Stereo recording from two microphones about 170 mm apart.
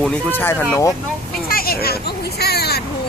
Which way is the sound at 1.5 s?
60° left (ahead or behind).